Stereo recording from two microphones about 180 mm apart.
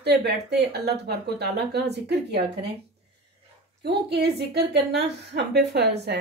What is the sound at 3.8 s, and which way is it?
Speech, 65° right (ahead or behind).